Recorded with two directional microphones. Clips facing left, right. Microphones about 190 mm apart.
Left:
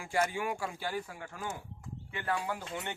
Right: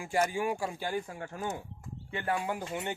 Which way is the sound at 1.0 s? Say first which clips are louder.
Right 4 dB; 30° right (ahead or behind).